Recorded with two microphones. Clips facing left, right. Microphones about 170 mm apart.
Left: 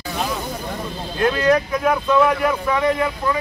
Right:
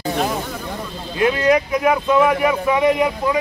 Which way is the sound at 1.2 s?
15° right (ahead or behind).